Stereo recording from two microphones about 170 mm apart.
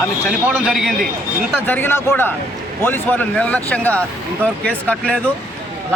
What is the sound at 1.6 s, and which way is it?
Speech, 10° left (ahead or behind).